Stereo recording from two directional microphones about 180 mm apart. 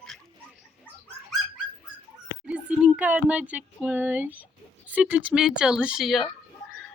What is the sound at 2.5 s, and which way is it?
Speech, 5° right (ahead or behind).